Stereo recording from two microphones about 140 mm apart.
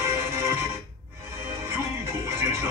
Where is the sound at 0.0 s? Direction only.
15° right (ahead or behind).